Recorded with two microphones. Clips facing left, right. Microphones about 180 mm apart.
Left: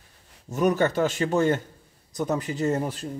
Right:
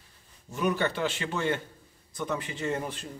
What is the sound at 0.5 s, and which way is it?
Speech, 45° left (ahead or behind).